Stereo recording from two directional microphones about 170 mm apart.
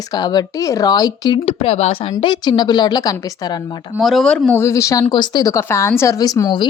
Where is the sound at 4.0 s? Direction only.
Centre (ahead or behind).